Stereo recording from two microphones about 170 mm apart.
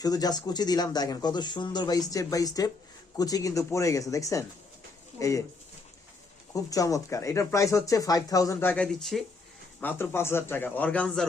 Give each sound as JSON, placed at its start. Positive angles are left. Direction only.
{"t": 0.0, "sound": "speech", "side_deg": 20}
{"t": 6.5, "sound": "speech", "side_deg": 20}
{"t": 8.7, "sound": "speech", "side_deg": 5}
{"t": 9.8, "sound": "a man's voice", "side_deg": 15}